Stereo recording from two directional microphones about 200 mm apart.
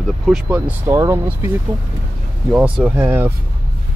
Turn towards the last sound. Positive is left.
turn(degrees=-10)  # may be behind; listen again after turning